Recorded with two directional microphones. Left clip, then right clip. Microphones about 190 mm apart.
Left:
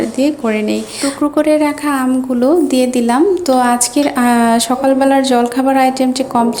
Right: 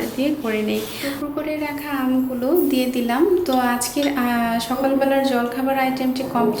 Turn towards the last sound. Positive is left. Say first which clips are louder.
# left 7 dB
turn(degrees=50)  # may be behind; listen again after turning